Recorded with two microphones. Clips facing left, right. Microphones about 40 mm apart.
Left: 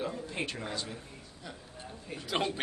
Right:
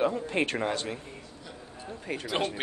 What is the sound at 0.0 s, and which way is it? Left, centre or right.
Speech, right.